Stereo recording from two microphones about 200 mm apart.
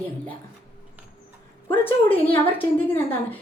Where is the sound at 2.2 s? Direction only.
25° left (ahead or behind).